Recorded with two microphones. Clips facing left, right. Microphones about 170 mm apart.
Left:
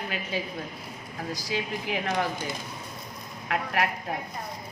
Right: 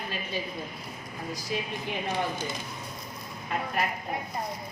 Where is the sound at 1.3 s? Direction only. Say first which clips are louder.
Left 2 dB; 90° left.